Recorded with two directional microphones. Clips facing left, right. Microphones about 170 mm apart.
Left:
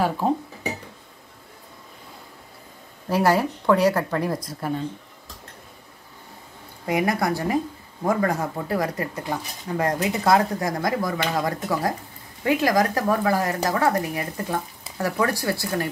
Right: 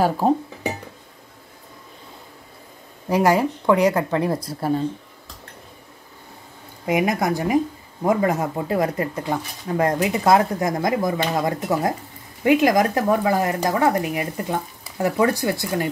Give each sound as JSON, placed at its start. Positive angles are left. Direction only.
{"t": 3.1, "sound": "speech", "side_deg": -15}
{"t": 6.9, "sound": "speech", "side_deg": -20}